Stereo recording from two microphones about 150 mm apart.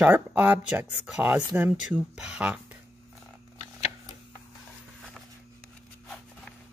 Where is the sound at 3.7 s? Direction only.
45° left (ahead or behind).